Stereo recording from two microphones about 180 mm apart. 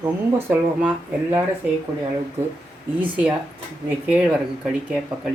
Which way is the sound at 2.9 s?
10° right (ahead or behind).